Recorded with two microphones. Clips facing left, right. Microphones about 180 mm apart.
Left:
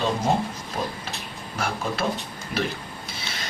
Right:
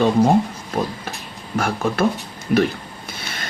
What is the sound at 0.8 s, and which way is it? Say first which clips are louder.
Speech: right 7 dB; 55° right (ahead or behind).